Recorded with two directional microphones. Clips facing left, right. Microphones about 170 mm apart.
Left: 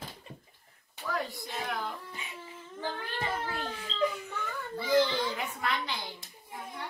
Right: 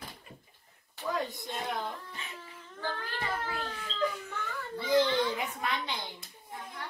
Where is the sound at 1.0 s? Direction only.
20° right (ahead or behind).